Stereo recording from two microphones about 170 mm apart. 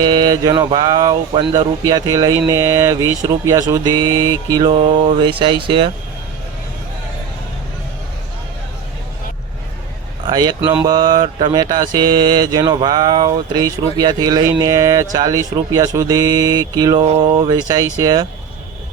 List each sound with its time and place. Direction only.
0.0 s mantra: 25° right (ahead or behind)
10.2 s mantra: 25° right (ahead or behind)
17.1 s mantra: 35° right (ahead or behind)